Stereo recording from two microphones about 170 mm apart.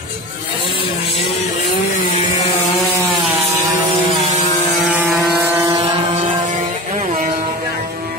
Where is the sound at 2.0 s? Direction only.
40° left (ahead or behind).